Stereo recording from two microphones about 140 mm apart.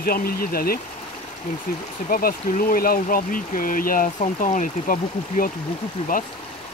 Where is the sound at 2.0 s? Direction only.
90° left.